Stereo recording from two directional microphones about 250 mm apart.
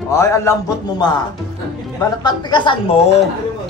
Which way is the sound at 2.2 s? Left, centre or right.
Centre.